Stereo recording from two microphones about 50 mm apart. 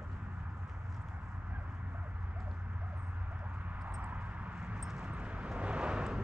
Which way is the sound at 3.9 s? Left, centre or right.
Right.